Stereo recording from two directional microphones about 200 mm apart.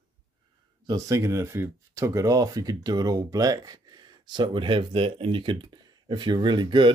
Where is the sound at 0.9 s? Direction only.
15° right (ahead or behind).